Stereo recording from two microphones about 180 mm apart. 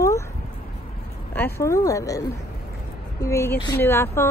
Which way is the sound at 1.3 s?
15° left (ahead or behind).